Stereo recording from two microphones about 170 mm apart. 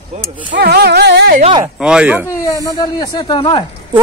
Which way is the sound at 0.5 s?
75° right (ahead or behind).